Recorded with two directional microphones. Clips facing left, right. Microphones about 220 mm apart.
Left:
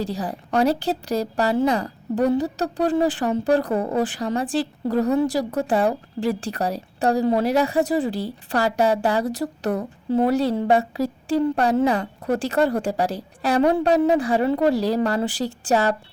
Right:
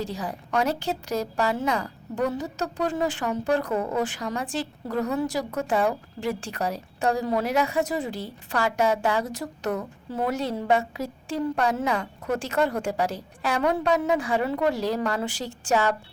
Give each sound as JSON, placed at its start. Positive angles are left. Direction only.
{"t": 0.0, "sound": "a woman's voice", "side_deg": 35}